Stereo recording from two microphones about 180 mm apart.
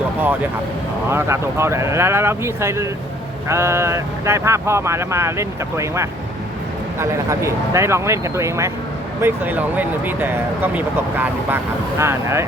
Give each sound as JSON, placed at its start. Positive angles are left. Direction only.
{"t": 1.1, "sound": "speech", "side_deg": -15}